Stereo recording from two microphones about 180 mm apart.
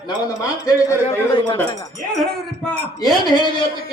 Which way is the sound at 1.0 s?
30° left (ahead or behind).